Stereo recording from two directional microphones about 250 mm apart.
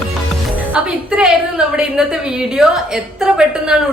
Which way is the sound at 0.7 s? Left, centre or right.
Centre.